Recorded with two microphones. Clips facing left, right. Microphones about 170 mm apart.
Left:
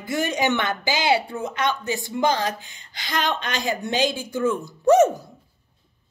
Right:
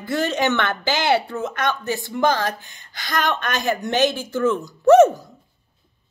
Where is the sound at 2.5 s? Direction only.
50° right (ahead or behind).